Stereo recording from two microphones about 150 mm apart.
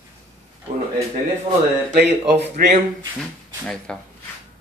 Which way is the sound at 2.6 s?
80° right.